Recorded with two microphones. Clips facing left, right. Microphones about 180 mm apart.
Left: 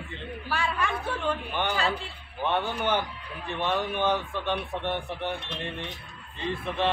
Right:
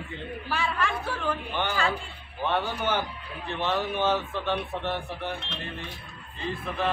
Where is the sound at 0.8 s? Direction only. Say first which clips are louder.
Even; 20° left (ahead or behind).